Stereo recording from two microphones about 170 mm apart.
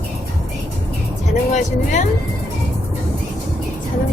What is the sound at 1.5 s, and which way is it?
Vehicle, 45° left (ahead or behind).